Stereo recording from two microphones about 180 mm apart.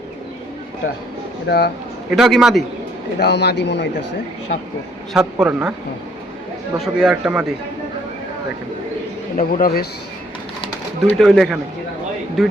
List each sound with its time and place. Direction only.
1.5 s a man's voice: 65° left (ahead or behind)
2.0 s a man's voice: centre (ahead or behind)
3.2 s speech: 70° left (ahead or behind)
5.1 s a man's voice: 5° right (ahead or behind)
6.7 s a man's voice: centre (ahead or behind)
9.4 s a man's voice: 55° left (ahead or behind)
10.6 s bird: 35° left (ahead or behind)
11.2 s a man's voice: centre (ahead or behind)